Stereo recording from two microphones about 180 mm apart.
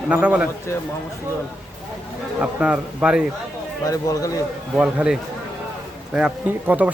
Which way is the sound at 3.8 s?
20° left (ahead or behind).